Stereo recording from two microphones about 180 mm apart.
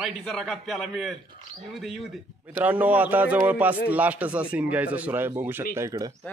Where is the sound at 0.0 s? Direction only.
Centre (ahead or behind).